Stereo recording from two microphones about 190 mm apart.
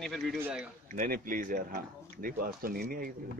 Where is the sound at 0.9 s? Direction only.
45° right (ahead or behind).